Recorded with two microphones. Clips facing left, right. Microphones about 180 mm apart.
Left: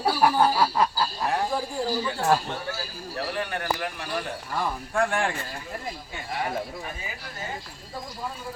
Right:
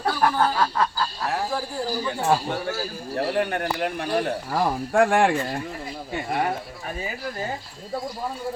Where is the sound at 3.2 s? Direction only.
60° right (ahead or behind).